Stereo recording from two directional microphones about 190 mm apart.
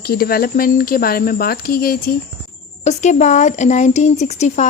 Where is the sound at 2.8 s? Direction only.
35° left (ahead or behind).